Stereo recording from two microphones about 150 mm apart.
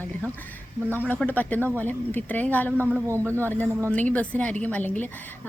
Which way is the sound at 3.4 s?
10° left (ahead or behind).